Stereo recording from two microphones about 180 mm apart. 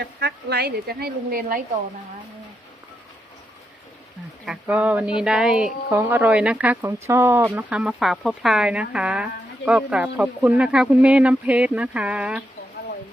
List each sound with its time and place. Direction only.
0.0 s a woman's voice: 65° right (ahead or behind)
4.4 s speech: 5° right (ahead or behind)